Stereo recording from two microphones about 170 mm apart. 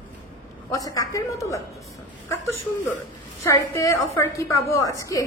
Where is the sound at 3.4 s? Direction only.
15° left (ahead or behind).